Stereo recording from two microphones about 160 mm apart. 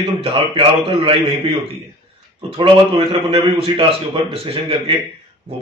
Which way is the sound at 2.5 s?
35° right (ahead or behind).